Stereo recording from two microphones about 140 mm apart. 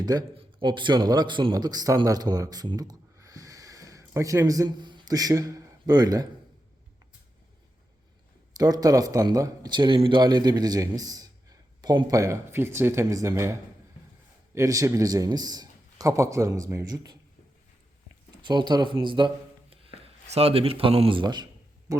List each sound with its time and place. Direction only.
0.0 s a man's voice: 25° right (ahead or behind)
8.5 s a man's voice: 25° right (ahead or behind)
18.4 s speech: 30° right (ahead or behind)
20.0 s speech: 45° right (ahead or behind)
21.9 s a man's voice: 25° right (ahead or behind)